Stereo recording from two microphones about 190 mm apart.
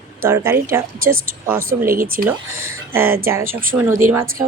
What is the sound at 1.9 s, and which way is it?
Speech, 50° right (ahead or behind).